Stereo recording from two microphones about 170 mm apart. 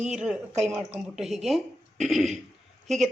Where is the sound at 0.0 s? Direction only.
5° right (ahead or behind).